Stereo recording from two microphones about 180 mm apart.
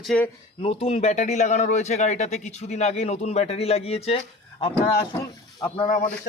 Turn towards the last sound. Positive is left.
turn(degrees=45)  # may be behind; listen again after turning